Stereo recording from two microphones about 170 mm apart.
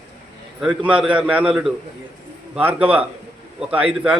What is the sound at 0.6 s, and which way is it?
A man's voice, 5° right (ahead or behind).